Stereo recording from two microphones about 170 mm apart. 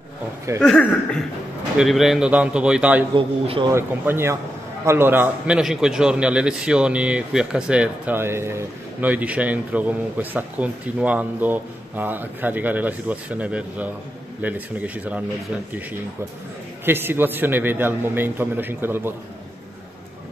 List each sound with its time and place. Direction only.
0.6 s a man's voice: 5° left (ahead or behind)
3.2 s speech: 30° right (ahead or behind)
3.7 s a man's voice: 15° right (ahead or behind)
16.8 s a man's voice: 10° right (ahead or behind)